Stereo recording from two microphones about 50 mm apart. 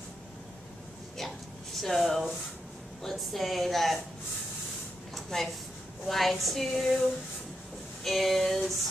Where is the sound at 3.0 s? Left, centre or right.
Centre.